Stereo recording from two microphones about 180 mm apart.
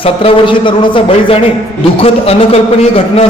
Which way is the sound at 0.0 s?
30° left (ahead or behind).